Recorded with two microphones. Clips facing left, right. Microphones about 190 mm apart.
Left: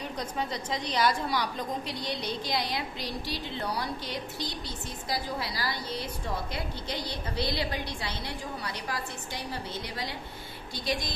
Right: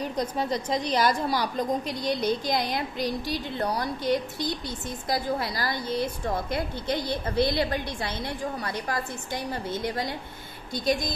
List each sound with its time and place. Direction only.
0.5 s a woman's voice: 45° right (ahead or behind)